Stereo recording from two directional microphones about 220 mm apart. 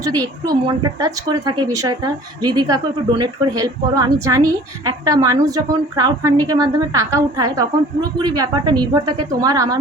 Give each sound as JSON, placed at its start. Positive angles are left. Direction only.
{"t": 0.8, "sound": "a woman's voice", "side_deg": -15}